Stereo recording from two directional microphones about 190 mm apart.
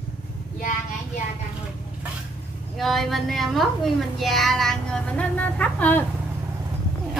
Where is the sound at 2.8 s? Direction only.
Centre (ahead or behind).